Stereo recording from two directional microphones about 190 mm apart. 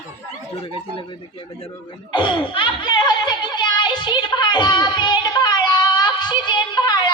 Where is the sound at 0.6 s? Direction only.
30° left (ahead or behind).